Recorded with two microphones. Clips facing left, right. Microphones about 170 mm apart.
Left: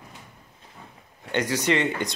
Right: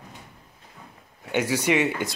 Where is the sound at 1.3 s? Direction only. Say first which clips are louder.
Right 1 dB; 10° right (ahead or behind).